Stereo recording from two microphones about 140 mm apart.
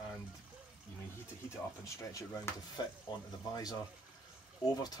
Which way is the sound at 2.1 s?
25° left (ahead or behind).